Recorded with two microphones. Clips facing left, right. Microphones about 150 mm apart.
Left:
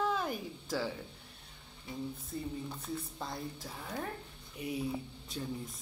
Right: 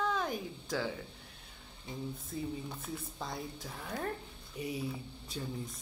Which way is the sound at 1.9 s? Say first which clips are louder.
Left 1 dB; 20° right (ahead or behind).